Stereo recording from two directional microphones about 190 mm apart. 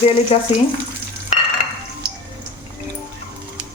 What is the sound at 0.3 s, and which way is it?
Speech, 35° left (ahead or behind).